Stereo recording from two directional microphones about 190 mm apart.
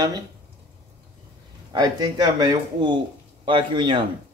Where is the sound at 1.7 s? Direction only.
20° right (ahead or behind).